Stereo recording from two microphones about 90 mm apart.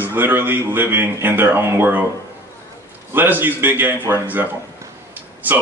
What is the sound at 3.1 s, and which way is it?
A man's voice, 20° right (ahead or behind).